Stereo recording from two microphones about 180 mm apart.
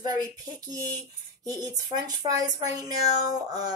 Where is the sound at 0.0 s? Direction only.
20° right (ahead or behind).